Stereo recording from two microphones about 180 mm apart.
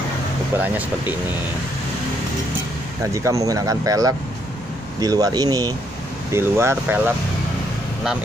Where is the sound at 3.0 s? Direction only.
15° right (ahead or behind).